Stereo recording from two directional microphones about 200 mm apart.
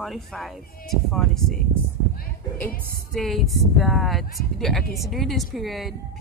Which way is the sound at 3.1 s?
Centre (ahead or behind).